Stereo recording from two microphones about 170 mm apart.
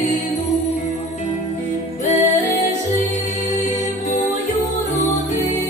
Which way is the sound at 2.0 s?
40° left (ahead or behind).